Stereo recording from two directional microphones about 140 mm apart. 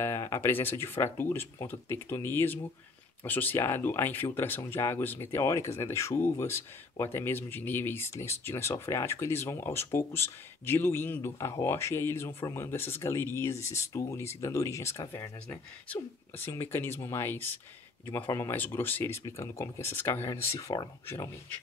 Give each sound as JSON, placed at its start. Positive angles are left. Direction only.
{"t": 0.0, "sound": "speech", "side_deg": 20}